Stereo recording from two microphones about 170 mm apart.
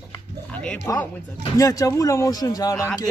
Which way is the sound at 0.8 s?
20° left (ahead or behind).